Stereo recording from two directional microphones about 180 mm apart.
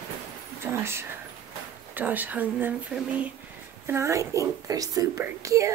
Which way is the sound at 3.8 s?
15° right (ahead or behind).